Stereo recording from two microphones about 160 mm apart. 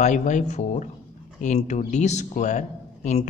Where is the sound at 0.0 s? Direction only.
50° left (ahead or behind).